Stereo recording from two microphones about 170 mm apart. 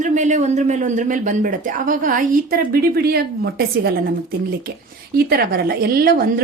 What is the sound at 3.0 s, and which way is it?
Speech, 65° right (ahead or behind).